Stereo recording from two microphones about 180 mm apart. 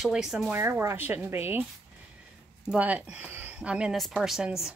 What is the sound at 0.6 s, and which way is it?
Speech, 15° right (ahead or behind).